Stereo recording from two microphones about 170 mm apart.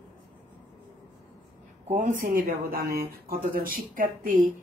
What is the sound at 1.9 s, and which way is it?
Speech, 50° right (ahead or behind).